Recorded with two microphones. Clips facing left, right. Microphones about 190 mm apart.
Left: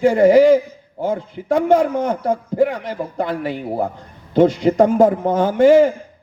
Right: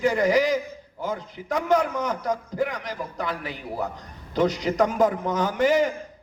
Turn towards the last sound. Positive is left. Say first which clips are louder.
# left 10 dB
turn(degrees=30)  # may be behind; listen again after turning